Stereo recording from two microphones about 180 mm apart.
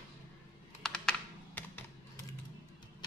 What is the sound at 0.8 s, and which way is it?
Computer keyboard, 5° left (ahead or behind).